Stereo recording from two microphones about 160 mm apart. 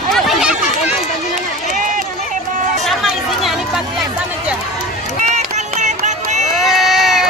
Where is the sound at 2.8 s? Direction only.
Centre (ahead or behind).